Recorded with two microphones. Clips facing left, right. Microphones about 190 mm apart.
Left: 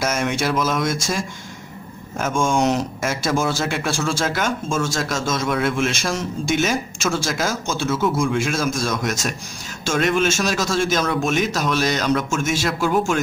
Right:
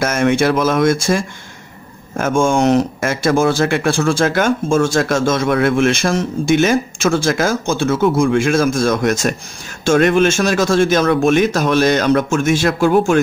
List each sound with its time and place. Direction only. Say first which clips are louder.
0.0 s speech: right 7 dB; 55° right (ahead or behind)
2.1 s speech: right 5 dB; 55° right (ahead or behind)